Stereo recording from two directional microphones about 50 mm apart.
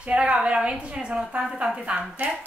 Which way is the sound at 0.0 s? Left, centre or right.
Right.